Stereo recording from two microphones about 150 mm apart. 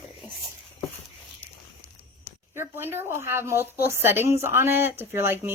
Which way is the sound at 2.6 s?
15° right (ahead or behind).